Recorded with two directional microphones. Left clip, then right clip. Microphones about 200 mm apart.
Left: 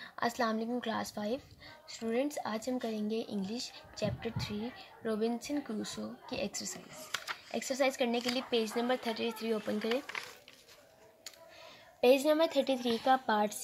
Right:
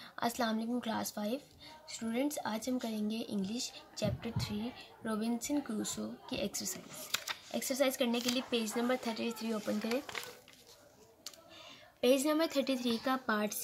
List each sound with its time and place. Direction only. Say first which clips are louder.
0.0 s speech: left 2 dB; 10° left (ahead or behind)
12.0 s a woman's voice: left 4 dB; 10° left (ahead or behind)